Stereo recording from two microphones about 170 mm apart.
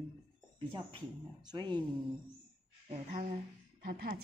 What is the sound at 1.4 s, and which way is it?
Speech, 25° right (ahead or behind).